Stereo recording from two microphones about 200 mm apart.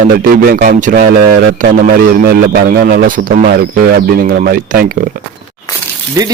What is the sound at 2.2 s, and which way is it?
A man's voice, 50° right (ahead or behind).